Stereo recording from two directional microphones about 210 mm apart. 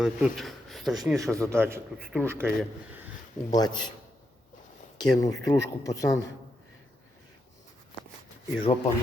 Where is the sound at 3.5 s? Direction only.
20° left (ahead or behind).